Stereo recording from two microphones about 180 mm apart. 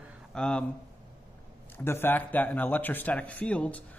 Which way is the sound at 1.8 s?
10° left (ahead or behind).